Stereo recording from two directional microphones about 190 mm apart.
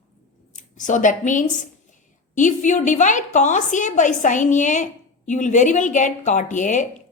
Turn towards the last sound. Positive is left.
turn(degrees=40)  # may be behind; listen again after turning